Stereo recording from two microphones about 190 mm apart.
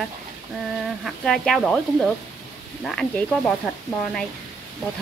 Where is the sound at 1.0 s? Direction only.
Centre (ahead or behind).